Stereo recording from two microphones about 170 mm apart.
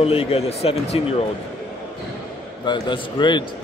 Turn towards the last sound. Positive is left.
turn(degrees=25)  # may be behind; listen again after turning